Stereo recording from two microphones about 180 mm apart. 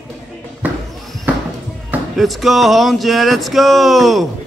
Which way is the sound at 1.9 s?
Centre (ahead or behind).